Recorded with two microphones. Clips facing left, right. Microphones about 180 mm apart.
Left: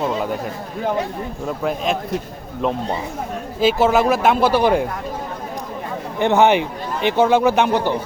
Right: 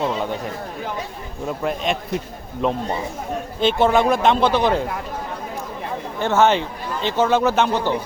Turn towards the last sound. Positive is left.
turn(degrees=15)  # may be behind; listen again after turning